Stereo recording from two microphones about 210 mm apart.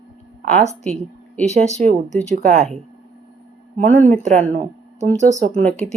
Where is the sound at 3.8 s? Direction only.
35° right (ahead or behind).